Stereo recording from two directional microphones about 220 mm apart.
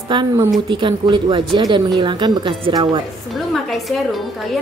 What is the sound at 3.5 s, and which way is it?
Speech, centre (ahead or behind).